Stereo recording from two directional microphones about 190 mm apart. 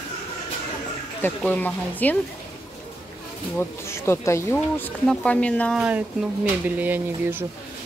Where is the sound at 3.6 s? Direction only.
15° left (ahead or behind).